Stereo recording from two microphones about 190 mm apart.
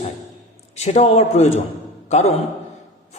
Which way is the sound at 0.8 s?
35° left (ahead or behind).